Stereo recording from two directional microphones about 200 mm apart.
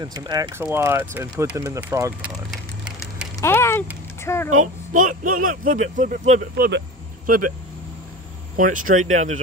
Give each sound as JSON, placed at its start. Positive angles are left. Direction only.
{"t": 0.0, "sound": "speech", "side_deg": -20}
{"t": 3.3, "sound": "a sound", "side_deg": 15}
{"t": 4.2, "sound": "a child's voice", "side_deg": 10}
{"t": 4.9, "sound": "speech", "side_deg": -40}
{"t": 6.5, "sound": "speech", "side_deg": -50}
{"t": 8.5, "sound": "speech", "side_deg": -40}